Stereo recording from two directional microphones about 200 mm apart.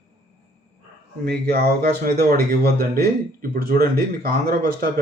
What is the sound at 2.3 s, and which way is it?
Speech, 50° right (ahead or behind).